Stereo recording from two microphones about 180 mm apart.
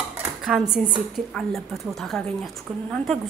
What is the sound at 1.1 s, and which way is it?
A woman's voice, centre (ahead or behind).